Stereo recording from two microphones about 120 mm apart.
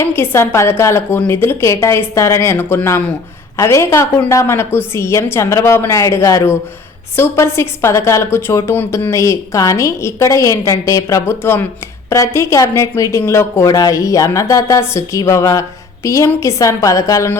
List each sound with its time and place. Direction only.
0.0 s a woman's voice: 20° left (ahead or behind)